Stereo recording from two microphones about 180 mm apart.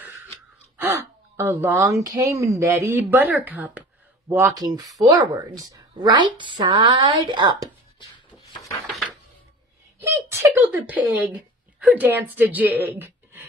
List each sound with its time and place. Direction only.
0.7 s a woman's voice: 10° right (ahead or behind)
9.9 s speech: 10° right (ahead or behind)